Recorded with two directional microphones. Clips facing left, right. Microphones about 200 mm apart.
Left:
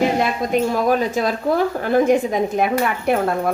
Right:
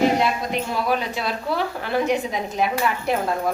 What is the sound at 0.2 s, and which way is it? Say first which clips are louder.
A woman's voice: left 4 dB; 45° left (ahead or behind).